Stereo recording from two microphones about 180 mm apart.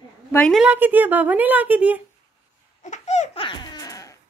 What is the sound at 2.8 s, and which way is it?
Laughter, 40° left (ahead or behind).